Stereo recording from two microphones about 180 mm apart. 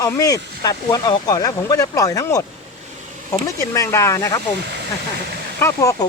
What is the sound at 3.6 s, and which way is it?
Speech, 15° left (ahead or behind).